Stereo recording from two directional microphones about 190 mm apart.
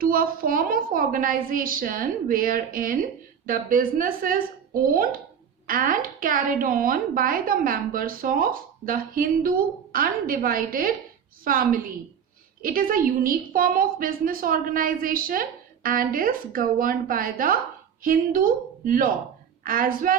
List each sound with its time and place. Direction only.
0.0 s a woman's voice: 50° right (ahead or behind)